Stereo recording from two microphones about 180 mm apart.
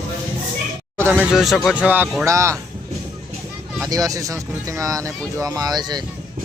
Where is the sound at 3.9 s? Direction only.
20° right (ahead or behind).